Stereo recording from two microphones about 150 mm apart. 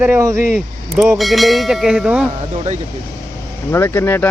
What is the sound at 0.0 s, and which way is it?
Speech, 20° right (ahead or behind).